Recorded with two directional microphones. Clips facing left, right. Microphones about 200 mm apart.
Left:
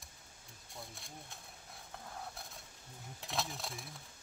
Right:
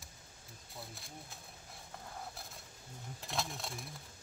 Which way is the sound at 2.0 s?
Centre (ahead or behind).